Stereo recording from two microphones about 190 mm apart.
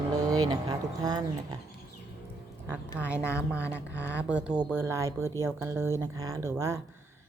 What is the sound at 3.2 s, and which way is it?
Speech, 15° left (ahead or behind).